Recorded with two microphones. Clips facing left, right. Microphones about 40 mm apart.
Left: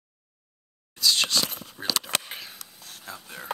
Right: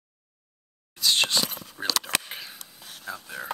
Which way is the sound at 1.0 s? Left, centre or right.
Right.